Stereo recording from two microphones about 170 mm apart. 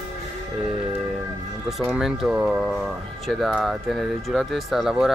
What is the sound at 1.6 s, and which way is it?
Speech, centre (ahead or behind).